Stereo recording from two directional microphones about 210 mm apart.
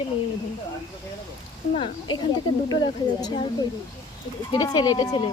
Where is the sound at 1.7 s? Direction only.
25° left (ahead or behind).